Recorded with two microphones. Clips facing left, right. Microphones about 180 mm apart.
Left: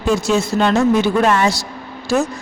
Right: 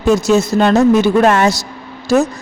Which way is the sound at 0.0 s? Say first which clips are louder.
Right 5 dB; 40° right (ahead or behind).